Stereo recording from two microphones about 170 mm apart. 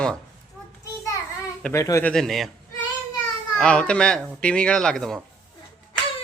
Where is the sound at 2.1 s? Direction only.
Centre (ahead or behind).